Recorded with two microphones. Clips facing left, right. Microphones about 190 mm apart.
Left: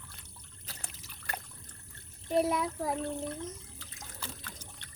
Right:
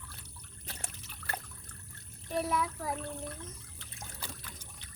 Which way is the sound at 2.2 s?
25° left (ahead or behind).